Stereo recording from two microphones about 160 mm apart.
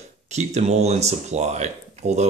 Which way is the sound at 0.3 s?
45° right (ahead or behind).